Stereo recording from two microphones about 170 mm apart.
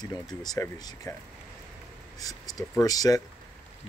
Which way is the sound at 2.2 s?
20° left (ahead or behind).